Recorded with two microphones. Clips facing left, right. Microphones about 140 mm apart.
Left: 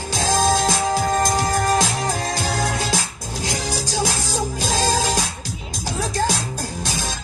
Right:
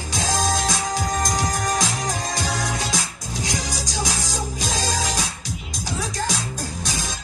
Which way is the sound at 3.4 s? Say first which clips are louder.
Left 3 dB; 30° left (ahead or behind).